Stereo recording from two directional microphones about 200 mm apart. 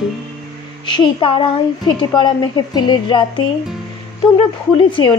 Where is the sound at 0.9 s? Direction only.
25° left (ahead or behind).